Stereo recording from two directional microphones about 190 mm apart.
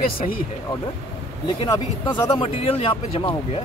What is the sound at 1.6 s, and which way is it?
Speech, 20° left (ahead or behind).